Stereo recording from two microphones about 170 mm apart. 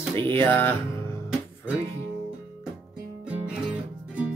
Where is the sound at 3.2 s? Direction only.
5° right (ahead or behind).